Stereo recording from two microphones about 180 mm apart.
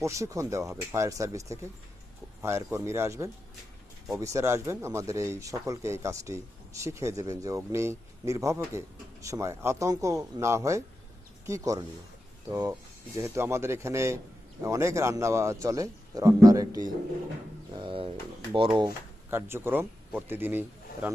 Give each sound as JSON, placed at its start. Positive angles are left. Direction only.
{"t": 0.0, "sound": "speech", "side_deg": -15}
{"t": 19.3, "sound": "speech", "side_deg": -15}